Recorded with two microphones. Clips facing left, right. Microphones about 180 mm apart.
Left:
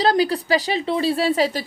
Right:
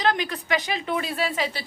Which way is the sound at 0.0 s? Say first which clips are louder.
Left 7 dB; 35° left (ahead or behind).